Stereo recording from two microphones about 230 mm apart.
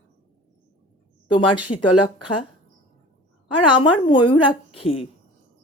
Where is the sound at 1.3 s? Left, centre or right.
Left.